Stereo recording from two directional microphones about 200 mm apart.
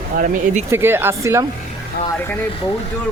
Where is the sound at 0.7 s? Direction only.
10° right (ahead or behind).